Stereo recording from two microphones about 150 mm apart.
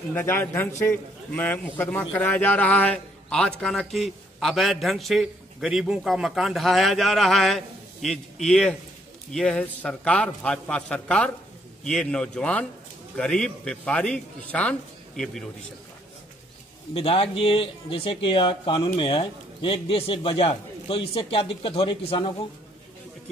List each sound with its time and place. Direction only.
0.1 s a man's voice: 15° left (ahead or behind)
16.9 s a man's voice: 40° left (ahead or behind)